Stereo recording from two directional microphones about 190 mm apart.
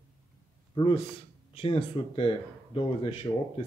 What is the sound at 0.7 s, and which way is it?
A man's voice, 25° left (ahead or behind).